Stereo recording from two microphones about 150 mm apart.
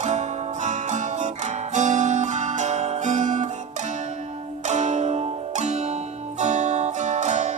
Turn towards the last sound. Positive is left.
turn(degrees=-50)  # may be behind; listen again after turning